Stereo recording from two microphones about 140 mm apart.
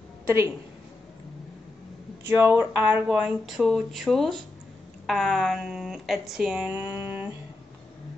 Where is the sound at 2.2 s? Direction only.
15° right (ahead or behind); by 6.7 s centre (ahead or behind).